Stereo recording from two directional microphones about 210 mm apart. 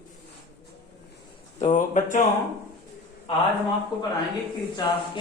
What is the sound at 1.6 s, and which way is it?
Speech, 35° left (ahead or behind).